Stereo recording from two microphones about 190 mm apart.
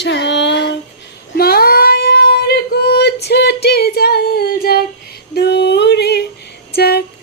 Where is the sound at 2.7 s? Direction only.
60° left (ahead or behind).